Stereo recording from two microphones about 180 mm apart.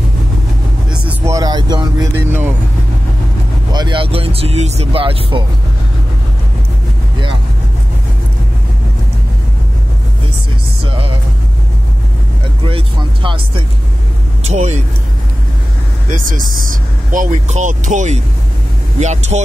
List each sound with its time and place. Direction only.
1.0 s music: 15° right (ahead or behind)
2.1 s vehicle: 10° right (ahead or behind)
3.7 s speech: 25° right (ahead or behind)
12.6 s speech: 30° right (ahead or behind)
14.4 s speech: 40° right (ahead or behind)
16.1 s speech: 50° right (ahead or behind)